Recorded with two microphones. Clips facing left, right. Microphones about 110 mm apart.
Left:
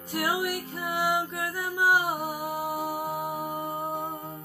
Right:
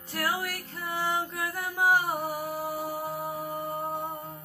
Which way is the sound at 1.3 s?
5° left (ahead or behind).